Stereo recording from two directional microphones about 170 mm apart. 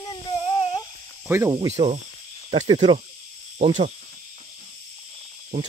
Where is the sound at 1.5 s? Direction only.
35° right (ahead or behind).